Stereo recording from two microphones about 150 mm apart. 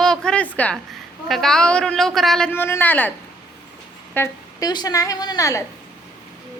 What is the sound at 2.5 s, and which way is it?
Speech, 15° left (ahead or behind).